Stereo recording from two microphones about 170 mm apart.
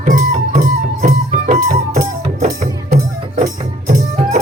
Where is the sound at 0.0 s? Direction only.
50° right (ahead or behind).